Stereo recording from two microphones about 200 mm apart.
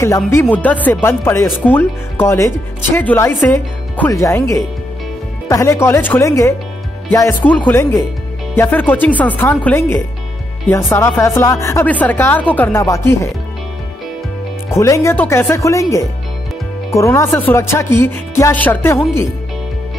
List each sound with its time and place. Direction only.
0.0 s speech: 15° left (ahead or behind)
14.7 s speech: 15° left (ahead or behind)